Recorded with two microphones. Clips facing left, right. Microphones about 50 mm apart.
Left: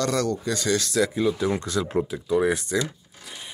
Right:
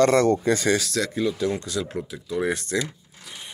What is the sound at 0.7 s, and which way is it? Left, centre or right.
Speech, centre.